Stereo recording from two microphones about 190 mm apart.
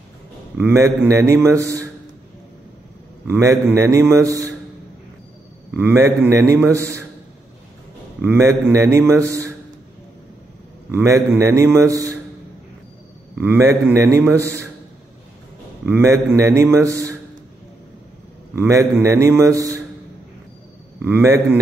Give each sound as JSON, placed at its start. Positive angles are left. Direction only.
{"t": 0.6, "sound": "a man's voice", "side_deg": -15}
{"t": 3.3, "sound": "a man's voice", "side_deg": -15}
{"t": 5.8, "sound": "a man's voice", "side_deg": -10}
{"t": 8.2, "sound": "a man's voice", "side_deg": -10}
{"t": 10.9, "sound": "a man's voice", "side_deg": -15}
{"t": 13.4, "sound": "a man's voice", "side_deg": -10}
{"t": 15.8, "sound": "a man's voice", "side_deg": -10}
{"t": 18.5, "sound": "a man's voice", "side_deg": -15}
{"t": 21.0, "sound": "a man's voice", "side_deg": -10}